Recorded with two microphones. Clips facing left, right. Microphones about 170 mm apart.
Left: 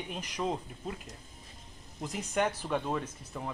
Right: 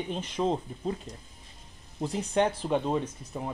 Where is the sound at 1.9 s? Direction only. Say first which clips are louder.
Right 5 dB; 30° right (ahead or behind).